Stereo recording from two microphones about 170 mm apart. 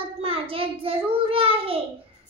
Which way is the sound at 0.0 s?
35° right (ahead or behind).